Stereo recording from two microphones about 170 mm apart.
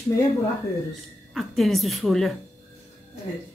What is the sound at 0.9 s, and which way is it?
A woman's voice, centre (ahead or behind).